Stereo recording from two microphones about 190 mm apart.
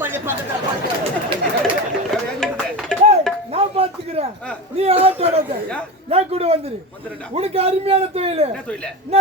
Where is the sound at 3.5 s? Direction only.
30° right (ahead or behind).